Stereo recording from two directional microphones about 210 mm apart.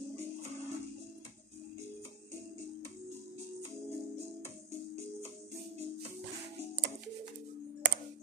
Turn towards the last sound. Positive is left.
turn(degrees=-55)  # may be behind; listen again after turning